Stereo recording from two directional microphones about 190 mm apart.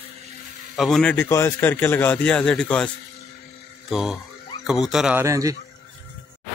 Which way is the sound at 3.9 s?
Centre (ahead or behind).